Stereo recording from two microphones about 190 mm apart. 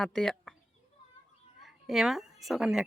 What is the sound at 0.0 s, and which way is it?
Speech, 5° left (ahead or behind).